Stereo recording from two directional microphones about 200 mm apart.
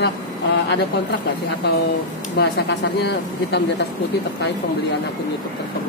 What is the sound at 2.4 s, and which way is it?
Speech, 55° left (ahead or behind).